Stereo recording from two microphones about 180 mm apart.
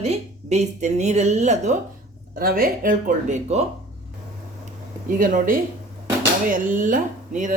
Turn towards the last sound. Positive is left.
turn(degrees=-45)  # may be behind; listen again after turning